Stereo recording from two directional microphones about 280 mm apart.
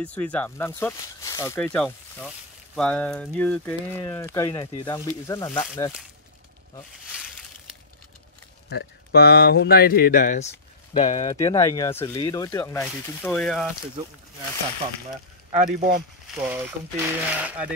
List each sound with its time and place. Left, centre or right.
0.0 s speech: centre
8.6 s speech: left
11.2 s speech: centre
15.5 s speech: right
16.4 s speech: centre